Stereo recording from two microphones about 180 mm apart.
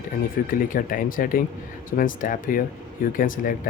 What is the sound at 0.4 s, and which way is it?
Speech, 55° left (ahead or behind).